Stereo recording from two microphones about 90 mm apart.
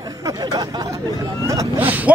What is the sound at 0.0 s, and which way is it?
Speech, 40° right (ahead or behind).